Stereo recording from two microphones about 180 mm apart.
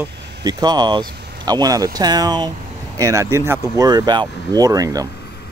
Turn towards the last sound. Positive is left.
turn(degrees=-20)  # may be behind; listen again after turning